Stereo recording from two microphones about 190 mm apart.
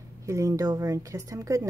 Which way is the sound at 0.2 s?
15° right (ahead or behind).